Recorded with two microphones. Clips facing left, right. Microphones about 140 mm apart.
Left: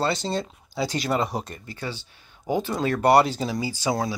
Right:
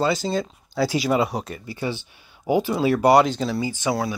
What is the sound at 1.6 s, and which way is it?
Speech, 15° right (ahead or behind).